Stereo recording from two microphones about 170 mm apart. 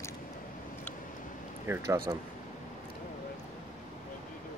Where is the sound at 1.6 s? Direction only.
15° right (ahead or behind).